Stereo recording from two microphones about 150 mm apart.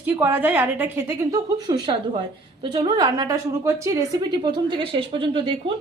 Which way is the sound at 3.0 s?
25° right (ahead or behind).